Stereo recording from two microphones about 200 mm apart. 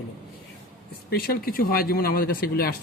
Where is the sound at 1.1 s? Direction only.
50° left (ahead or behind).